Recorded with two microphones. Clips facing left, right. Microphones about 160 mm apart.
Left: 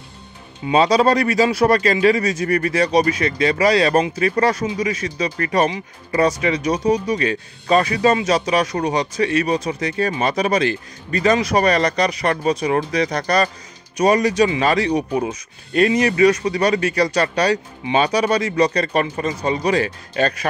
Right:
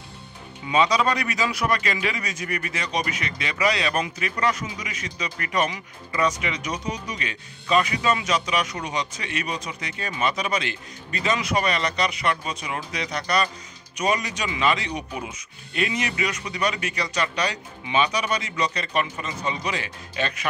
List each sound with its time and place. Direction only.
0.7 s speech: 35° left (ahead or behind)